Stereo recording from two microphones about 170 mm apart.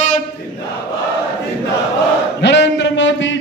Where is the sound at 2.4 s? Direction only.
90° left.